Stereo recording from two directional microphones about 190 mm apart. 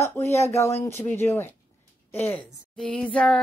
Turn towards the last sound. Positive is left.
turn(degrees=5)  # may be behind; listen again after turning